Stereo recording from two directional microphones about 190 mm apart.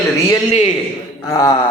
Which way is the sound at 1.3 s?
20° left (ahead or behind).